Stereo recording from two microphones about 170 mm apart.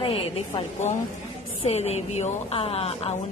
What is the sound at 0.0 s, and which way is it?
A woman's voice, 35° left (ahead or behind).